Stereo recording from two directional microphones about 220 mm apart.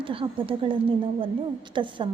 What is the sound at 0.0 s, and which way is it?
A woman's voice, 25° right (ahead or behind).